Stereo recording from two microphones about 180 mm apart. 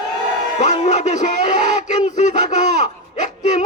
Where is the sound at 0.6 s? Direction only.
40° left (ahead or behind).